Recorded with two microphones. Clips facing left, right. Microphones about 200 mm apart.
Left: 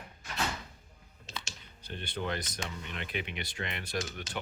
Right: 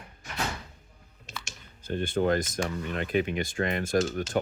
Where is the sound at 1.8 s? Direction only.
45° right (ahead or behind).